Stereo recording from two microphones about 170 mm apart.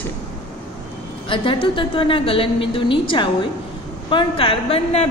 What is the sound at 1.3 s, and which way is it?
Speech, 30° left (ahead or behind).